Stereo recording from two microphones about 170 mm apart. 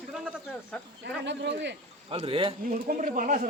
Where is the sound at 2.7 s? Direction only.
55° right (ahead or behind).